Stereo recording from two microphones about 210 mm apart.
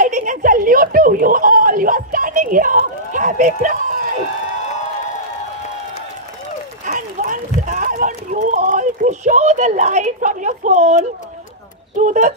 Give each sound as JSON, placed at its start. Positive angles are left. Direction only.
{"t": 0.0, "sound": "chuckle", "side_deg": -35}
{"t": 6.9, "sound": "a sound", "side_deg": -40}
{"t": 12.0, "sound": "speech", "side_deg": -35}